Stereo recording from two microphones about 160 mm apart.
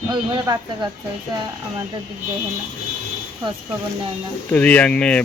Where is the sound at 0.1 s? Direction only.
25° right (ahead or behind).